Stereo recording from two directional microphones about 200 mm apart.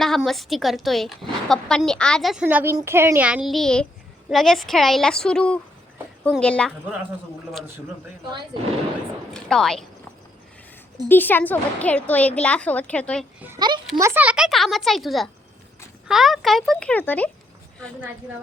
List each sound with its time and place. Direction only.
0.0 s a woman's voice: centre (ahead or behind)
9.3 s a woman's voice: 5° left (ahead or behind)
11.1 s a woman's voice: 10° left (ahead or behind)
13.6 s a child's voice: 25° right (ahead or behind); by 17.2 s 10° left (ahead or behind)